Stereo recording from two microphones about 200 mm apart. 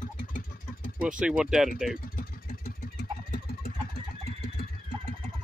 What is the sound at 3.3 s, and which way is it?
Engine, 45° left (ahead or behind).